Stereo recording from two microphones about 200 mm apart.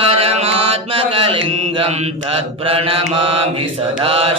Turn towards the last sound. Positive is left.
turn(degrees=-30)  # may be behind; listen again after turning